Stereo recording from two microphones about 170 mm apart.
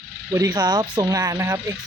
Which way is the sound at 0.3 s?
20° right (ahead or behind).